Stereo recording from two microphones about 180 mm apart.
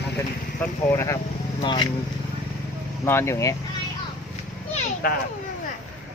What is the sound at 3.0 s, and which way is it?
Speech, 15° left (ahead or behind).